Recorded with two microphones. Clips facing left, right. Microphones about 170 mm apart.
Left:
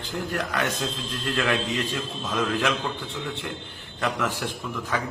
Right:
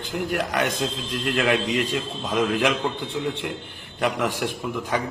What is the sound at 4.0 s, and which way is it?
Speech, 15° right (ahead or behind).